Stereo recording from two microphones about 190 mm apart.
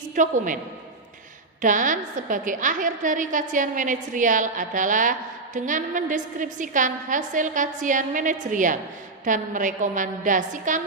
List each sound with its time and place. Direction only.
0.2 s a woman's voice: 45° right (ahead or behind)
1.6 s a woman's voice: 45° right (ahead or behind)